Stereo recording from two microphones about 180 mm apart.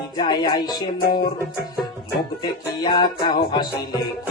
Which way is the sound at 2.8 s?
25° left (ahead or behind).